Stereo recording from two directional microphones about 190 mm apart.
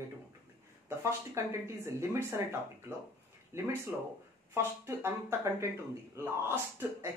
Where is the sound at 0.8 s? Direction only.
15° right (ahead or behind).